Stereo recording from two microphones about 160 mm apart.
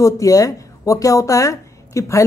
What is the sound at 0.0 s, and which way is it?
A woman's voice, 20° left (ahead or behind).